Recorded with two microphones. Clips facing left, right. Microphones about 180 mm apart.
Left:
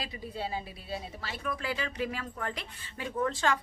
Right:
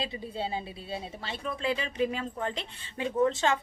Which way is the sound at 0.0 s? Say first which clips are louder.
Right 3 dB; 25° right (ahead or behind).